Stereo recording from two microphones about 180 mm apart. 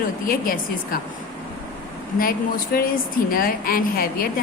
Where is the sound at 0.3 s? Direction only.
50° left (ahead or behind).